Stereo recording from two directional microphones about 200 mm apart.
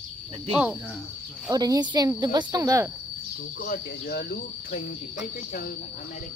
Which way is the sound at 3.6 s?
50° left (ahead or behind).